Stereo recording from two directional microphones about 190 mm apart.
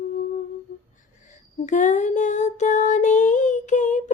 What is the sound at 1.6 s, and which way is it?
Child singing, 40° left (ahead or behind).